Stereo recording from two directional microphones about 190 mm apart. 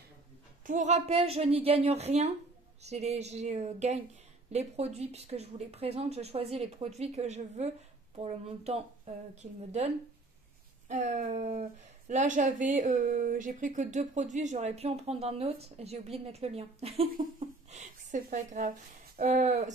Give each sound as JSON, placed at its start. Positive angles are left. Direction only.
{"t": 0.7, "sound": "speech", "side_deg": -40}